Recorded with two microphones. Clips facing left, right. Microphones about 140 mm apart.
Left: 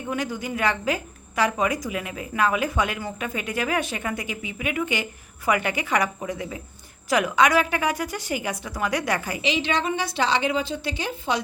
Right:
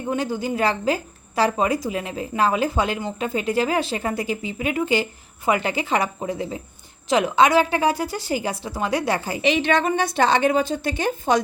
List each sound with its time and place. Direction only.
0.1 s a woman's voice: 30° right (ahead or behind)
9.4 s a woman's voice: 55° right (ahead or behind)